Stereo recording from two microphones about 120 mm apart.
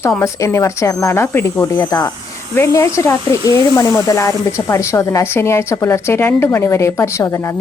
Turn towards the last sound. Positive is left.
turn(degrees=25)  # may be behind; listen again after turning